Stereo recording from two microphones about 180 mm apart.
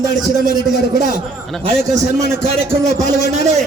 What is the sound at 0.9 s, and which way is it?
Speech, 45° right (ahead or behind).